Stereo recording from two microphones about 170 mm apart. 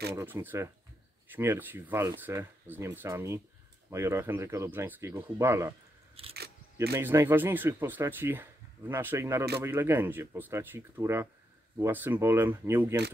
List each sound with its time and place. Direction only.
0.1 s speech: 15° right (ahead or behind)
6.3 s a sound: 70° right (ahead or behind)
7.0 s speech: 15° right (ahead or behind)